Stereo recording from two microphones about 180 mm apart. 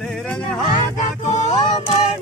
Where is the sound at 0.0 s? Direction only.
5° left (ahead or behind).